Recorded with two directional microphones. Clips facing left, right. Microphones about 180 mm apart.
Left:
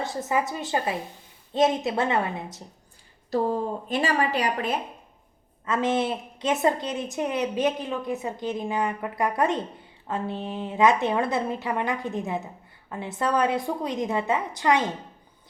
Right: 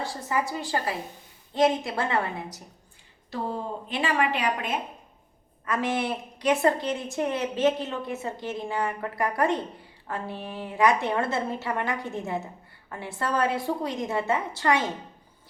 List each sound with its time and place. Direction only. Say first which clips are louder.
0.0 s a woman's voice: left 2 dB; 20° left (ahead or behind)
3.3 s a woman's voice: left 6 dB; 40° left (ahead or behind)
5.6 s a woman's voice: left 3 dB; 20° left (ahead or behind)